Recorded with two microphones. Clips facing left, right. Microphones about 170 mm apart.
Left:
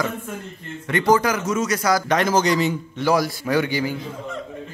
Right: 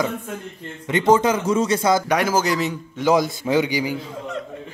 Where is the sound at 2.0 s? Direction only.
10° right (ahead or behind).